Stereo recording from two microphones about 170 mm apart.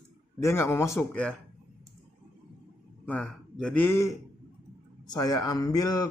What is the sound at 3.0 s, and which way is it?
Speech, 10° left (ahead or behind).